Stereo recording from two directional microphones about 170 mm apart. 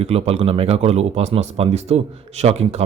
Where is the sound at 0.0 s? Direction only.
35° right (ahead or behind).